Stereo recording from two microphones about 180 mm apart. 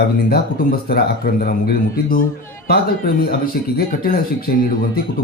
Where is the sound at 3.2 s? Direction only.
55° left (ahead or behind).